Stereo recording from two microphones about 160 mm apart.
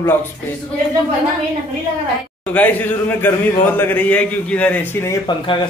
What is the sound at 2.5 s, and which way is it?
A man's voice, 10° left (ahead or behind).